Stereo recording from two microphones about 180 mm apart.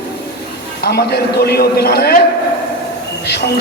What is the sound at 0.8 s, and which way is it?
A man's voice, 65° left (ahead or behind).